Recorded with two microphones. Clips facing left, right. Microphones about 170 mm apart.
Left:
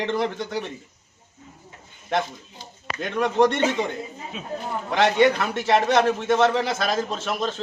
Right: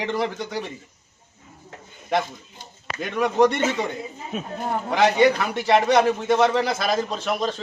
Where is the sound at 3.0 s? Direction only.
Centre (ahead or behind).